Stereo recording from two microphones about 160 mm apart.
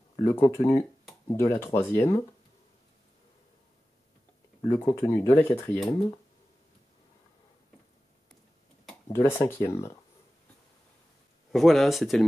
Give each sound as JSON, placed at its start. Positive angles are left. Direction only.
{"t": 0.2, "sound": "speech", "side_deg": 15}
{"t": 4.6, "sound": "speech", "side_deg": 15}
{"t": 9.1, "sound": "speech", "side_deg": 15}
{"t": 11.5, "sound": "speech", "side_deg": 0}